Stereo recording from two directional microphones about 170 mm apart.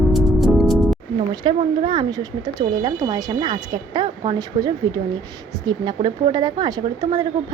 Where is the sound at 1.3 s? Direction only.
25° right (ahead or behind).